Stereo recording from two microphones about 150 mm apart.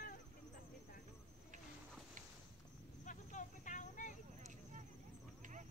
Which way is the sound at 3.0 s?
55° left (ahead or behind).